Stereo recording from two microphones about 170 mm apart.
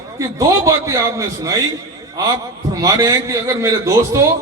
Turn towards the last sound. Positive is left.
turn(degrees=-20)  # may be behind; listen again after turning